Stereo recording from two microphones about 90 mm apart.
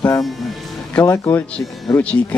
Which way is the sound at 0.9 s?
20° left (ahead or behind).